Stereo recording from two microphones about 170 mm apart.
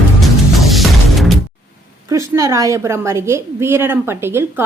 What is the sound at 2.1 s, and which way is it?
A woman's voice, 20° right (ahead or behind).